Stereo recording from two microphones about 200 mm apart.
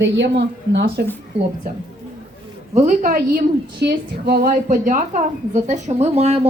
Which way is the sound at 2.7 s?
40° right (ahead or behind).